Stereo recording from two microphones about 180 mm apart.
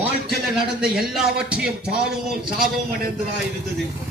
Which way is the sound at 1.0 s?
5° right (ahead or behind).